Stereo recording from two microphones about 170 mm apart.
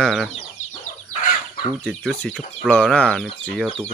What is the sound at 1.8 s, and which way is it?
Speech, 5° left (ahead or behind).